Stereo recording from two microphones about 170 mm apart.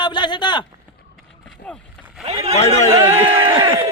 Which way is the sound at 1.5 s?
5° left (ahead or behind).